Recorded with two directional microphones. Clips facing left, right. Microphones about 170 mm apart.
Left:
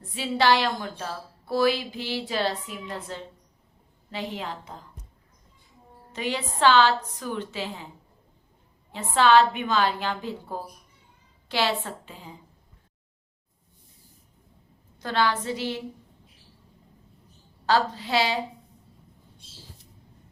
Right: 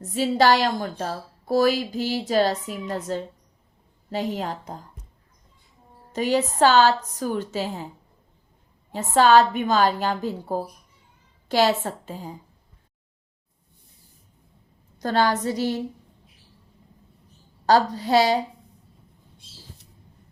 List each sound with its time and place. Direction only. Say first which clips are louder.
0.0 s a woman's voice: right 5 dB; 40° right (ahead or behind)
6.1 s a woman's voice: right 8 dB; 40° right (ahead or behind)
8.9 s a woman's voice: right 3 dB; 40° right (ahead or behind)
15.0 s a woman's voice: right 4 dB; 40° right (ahead or behind)
17.7 s a woman's voice: right 5 dB; 40° right (ahead or behind)